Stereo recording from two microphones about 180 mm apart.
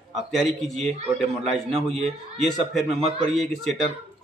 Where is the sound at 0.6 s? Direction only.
Centre (ahead or behind).